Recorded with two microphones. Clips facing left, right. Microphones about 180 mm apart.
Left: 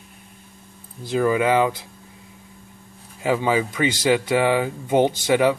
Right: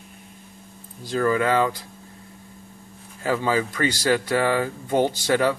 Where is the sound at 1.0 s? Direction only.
15° left (ahead or behind).